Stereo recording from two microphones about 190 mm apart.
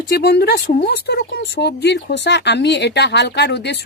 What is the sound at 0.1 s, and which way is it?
Speech, 60° left (ahead or behind).